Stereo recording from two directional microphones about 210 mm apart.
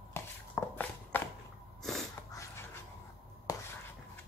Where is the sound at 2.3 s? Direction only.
15° left (ahead or behind).